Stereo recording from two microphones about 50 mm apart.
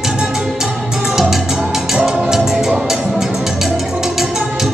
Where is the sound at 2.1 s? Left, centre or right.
Centre.